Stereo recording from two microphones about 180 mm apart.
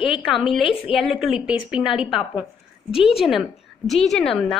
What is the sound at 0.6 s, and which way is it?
Speech, 30° left (ahead or behind).